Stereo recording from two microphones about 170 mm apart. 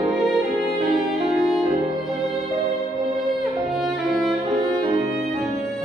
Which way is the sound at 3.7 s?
Centre (ahead or behind).